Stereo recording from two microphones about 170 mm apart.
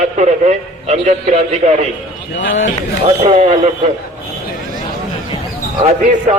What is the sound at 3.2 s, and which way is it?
Speech, 40° right (ahead or behind).